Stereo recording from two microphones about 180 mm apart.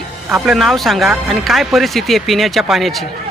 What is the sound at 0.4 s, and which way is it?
Speech, centre (ahead or behind).